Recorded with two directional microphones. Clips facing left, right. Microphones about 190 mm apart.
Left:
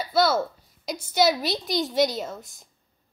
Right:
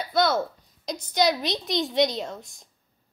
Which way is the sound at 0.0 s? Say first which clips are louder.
Left 1 dB; 5° left (ahead or behind).